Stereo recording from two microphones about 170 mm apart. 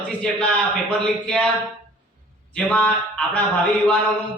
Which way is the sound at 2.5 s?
5° left (ahead or behind).